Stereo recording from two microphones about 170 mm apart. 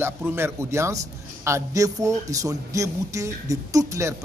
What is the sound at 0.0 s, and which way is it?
Speech, 15° right (ahead or behind).